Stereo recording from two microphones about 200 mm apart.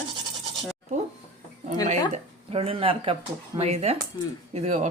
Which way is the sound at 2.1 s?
30° right (ahead or behind).